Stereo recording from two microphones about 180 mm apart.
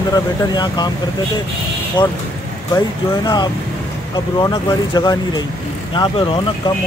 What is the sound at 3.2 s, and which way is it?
Speech, 25° left (ahead or behind).